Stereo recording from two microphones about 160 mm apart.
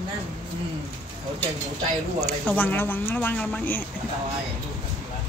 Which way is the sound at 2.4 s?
10° left (ahead or behind).